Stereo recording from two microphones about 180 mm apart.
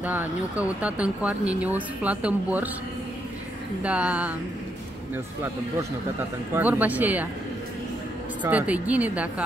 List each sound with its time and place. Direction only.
0.0 s speech: 10° right (ahead or behind)
3.8 s speech: 5° right (ahead or behind)
8.4 s speech: 10° right (ahead or behind)